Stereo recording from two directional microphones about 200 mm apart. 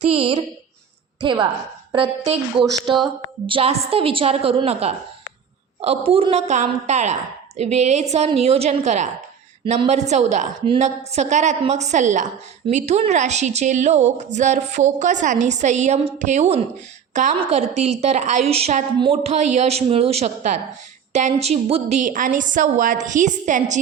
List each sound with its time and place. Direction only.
0.1 s a woman's voice: 25° right (ahead or behind)